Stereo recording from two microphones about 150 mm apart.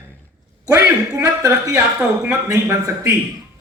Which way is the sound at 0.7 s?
20° right (ahead or behind).